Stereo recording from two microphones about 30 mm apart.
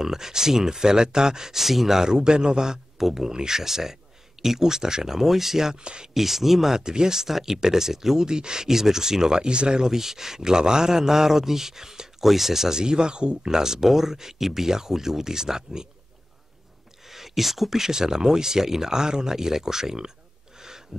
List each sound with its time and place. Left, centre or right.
0.0 s speech: centre
1.5 s speech: centre
2.0 s speech: centre
3.0 s speech: centre
5.8 s speech: right
6.1 s speech: centre
6.8 s speech: right
8.2 s speech: right
9.8 s speech: centre; by 13.5 s right
13.5 s speech: centre
17.0 s speech: centre
20.5 s a sound: centre